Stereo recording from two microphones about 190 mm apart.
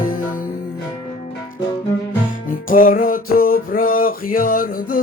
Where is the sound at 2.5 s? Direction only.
45° left (ahead or behind).